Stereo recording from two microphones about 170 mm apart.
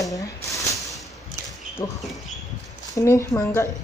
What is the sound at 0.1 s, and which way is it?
Speech, 20° left (ahead or behind).